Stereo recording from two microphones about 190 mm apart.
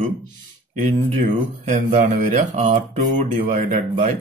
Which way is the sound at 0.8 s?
40° right (ahead or behind).